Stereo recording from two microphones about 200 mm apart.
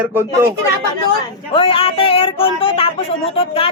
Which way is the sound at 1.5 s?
25° left (ahead or behind).